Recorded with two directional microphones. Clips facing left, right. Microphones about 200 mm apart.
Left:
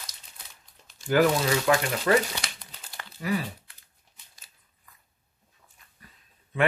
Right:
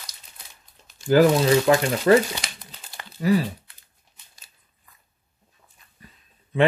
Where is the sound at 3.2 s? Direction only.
35° right (ahead or behind).